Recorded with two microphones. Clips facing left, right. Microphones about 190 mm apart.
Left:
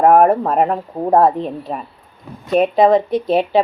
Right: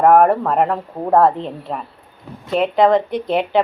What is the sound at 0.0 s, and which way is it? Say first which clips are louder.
Speech: left 1 dB; 20° left (ahead or behind).